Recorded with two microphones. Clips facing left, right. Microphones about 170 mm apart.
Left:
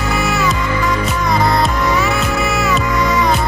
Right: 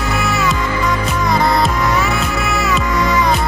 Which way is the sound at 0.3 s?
Centre (ahead or behind).